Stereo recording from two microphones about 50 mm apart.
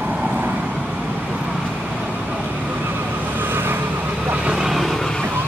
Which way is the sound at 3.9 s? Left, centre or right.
Right.